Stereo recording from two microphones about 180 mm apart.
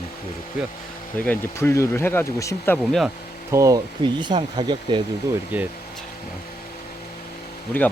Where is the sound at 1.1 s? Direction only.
10° left (ahead or behind).